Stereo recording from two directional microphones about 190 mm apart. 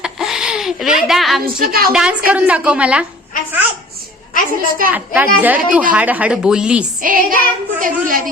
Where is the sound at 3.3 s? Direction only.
45° left (ahead or behind).